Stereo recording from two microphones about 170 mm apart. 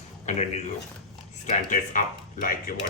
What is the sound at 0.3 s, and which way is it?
Speech, 40° left (ahead or behind).